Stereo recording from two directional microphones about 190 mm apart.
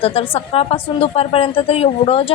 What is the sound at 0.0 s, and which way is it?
A woman's voice, 30° left (ahead or behind).